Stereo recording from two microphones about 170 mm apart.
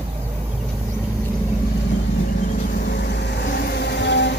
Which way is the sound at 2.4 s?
55° left (ahead or behind).